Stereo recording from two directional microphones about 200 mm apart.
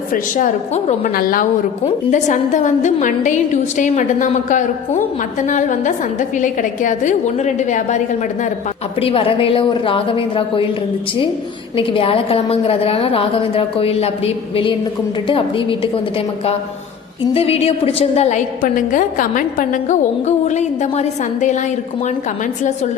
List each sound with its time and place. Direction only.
0.1 s a woman's voice: 40° left (ahead or behind)
1.1 s a woman's voice: 45° left (ahead or behind); by 10.7 s 25° left (ahead or behind)
11.8 s a woman's voice: 25° left (ahead or behind)